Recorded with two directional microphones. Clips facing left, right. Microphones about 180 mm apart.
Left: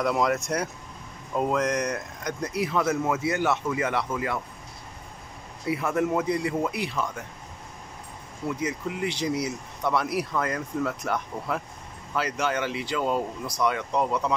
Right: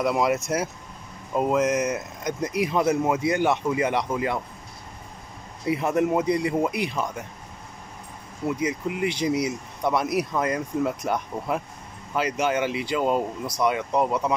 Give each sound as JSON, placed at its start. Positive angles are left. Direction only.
{"t": 0.0, "sound": "speech", "side_deg": -5}
{"t": 5.7, "sound": "speech", "side_deg": -20}
{"t": 8.5, "sound": "speech", "side_deg": -10}